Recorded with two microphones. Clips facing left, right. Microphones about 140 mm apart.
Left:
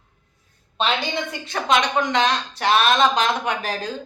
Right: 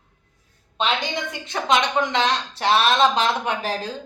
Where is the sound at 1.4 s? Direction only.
20° right (ahead or behind).